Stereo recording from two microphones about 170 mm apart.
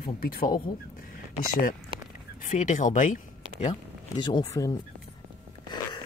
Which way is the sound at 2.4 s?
50° left (ahead or behind).